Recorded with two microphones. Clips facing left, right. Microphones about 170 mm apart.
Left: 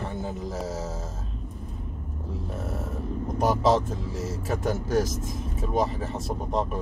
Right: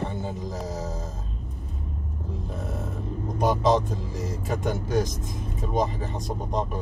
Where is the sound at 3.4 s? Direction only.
5° left (ahead or behind).